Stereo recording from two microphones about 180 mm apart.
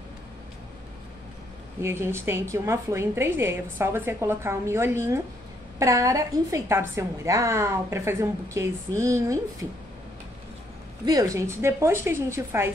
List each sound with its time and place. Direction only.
1.8 s a woman's voice: 15° right (ahead or behind)
11.1 s a woman's voice: 20° right (ahead or behind)